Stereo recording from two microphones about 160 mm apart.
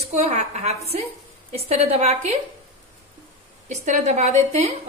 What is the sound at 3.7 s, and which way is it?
A woman's voice, 45° right (ahead or behind).